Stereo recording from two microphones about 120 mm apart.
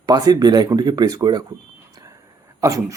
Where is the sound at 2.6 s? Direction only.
25° right (ahead or behind).